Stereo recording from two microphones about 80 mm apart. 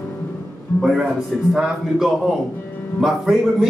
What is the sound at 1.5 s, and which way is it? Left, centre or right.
A man's voice, centre.